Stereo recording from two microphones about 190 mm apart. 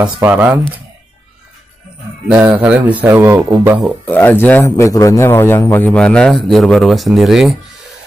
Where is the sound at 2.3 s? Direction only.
10° right (ahead or behind).